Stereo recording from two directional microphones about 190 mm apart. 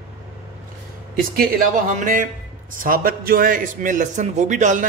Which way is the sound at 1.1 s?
50° right (ahead or behind).